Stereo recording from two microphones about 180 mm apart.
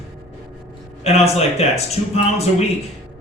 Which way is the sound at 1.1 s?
35° left (ahead or behind).